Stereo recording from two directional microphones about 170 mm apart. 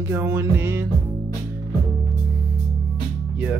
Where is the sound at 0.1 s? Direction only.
15° right (ahead or behind).